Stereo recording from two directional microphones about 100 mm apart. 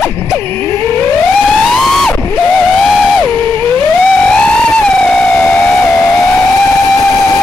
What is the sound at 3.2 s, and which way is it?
Theremin, 15° left (ahead or behind).